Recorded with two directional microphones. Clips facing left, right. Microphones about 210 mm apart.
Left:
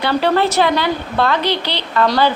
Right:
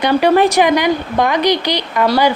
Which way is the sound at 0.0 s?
15° right (ahead or behind).